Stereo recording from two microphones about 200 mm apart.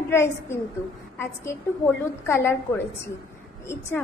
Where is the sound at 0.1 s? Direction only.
15° left (ahead or behind).